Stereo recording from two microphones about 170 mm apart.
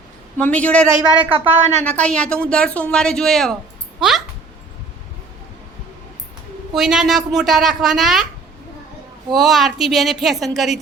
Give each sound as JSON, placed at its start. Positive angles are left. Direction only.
{"t": 0.3, "sound": "a man's voice", "side_deg": 10}
{"t": 1.3, "sound": "a woman's voice", "side_deg": -40}
{"t": 1.8, "sound": "speech", "side_deg": 10}
{"t": 6.7, "sound": "speech", "side_deg": -5}
{"t": 9.3, "sound": "speech", "side_deg": 0}